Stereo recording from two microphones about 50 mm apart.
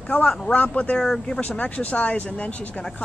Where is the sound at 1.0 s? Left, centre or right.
Centre.